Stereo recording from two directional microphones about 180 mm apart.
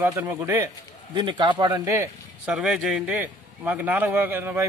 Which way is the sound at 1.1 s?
25° right (ahead or behind).